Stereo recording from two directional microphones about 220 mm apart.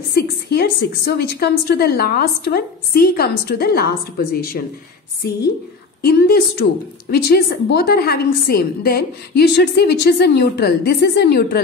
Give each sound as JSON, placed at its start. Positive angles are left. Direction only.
{"t": 0.1, "sound": "a woman's voice", "side_deg": 45}
{"t": 6.0, "sound": "a woman's voice", "side_deg": 45}